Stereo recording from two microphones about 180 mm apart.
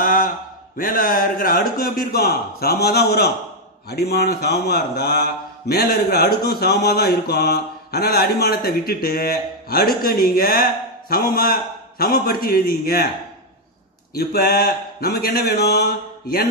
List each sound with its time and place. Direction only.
0.0 s a sound: 55° left (ahead or behind)
0.7 s a man's voice: 50° left (ahead or behind)
14.1 s a man's voice: 60° left (ahead or behind)